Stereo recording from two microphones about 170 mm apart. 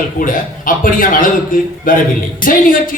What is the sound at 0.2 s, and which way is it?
Speech, 55° left (ahead or behind).